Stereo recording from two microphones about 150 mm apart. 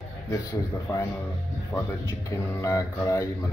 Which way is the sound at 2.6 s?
20° left (ahead or behind).